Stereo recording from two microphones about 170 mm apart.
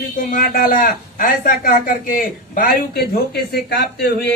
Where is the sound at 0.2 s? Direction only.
55° left (ahead or behind).